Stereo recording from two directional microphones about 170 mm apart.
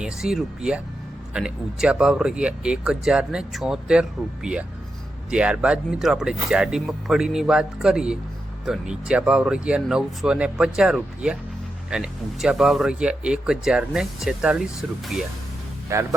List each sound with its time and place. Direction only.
0.0 s speech: 5° right (ahead or behind)
5.3 s speech: 5° right (ahead or behind)
15.9 s speech: 15° right (ahead or behind)